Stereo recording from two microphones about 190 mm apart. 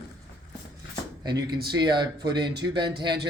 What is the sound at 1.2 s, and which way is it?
Speech, 20° right (ahead or behind).